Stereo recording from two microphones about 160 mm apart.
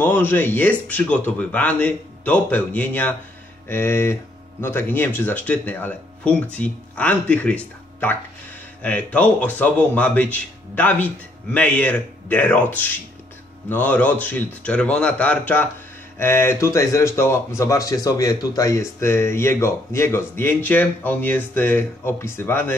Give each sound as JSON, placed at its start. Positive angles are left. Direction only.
{"t": 0.0, "sound": "speech", "side_deg": 10}